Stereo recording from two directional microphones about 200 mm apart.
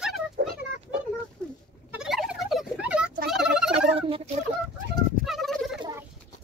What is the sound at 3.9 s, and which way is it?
Fowl, 30° right (ahead or behind).